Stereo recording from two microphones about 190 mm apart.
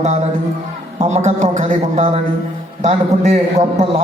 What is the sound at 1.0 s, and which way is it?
A man's voice, 35° right (ahead or behind).